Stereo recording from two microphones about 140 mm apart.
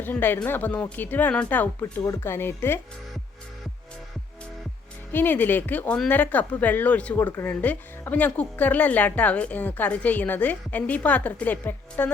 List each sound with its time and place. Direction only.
0.0 s speech: 15° left (ahead or behind)
5.1 s speech: 15° left (ahead or behind)